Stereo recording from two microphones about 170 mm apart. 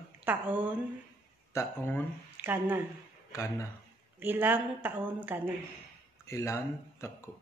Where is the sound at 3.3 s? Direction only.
15° left (ahead or behind).